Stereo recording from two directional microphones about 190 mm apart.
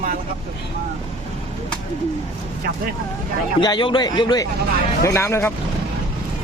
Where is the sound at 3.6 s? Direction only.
25° left (ahead or behind).